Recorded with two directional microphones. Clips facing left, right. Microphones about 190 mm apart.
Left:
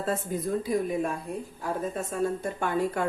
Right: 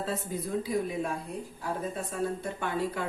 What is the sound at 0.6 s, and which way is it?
A woman's voice, 50° left (ahead or behind).